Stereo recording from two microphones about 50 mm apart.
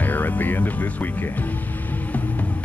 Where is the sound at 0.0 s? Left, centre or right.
Left.